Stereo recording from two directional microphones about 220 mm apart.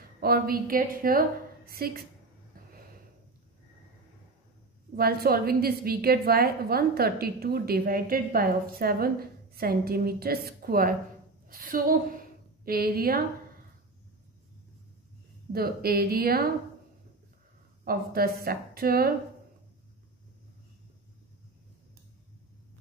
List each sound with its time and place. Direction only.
0.2 s a woman's voice: 40° right (ahead or behind)
4.9 s a woman's voice: 45° right (ahead or behind)
15.5 s a woman's voice: 45° right (ahead or behind)
17.8 s a woman's voice: 45° right (ahead or behind)